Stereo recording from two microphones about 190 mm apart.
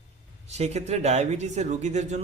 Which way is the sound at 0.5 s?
35° right (ahead or behind).